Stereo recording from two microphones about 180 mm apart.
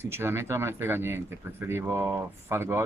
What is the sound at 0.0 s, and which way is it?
Speech, 15° right (ahead or behind).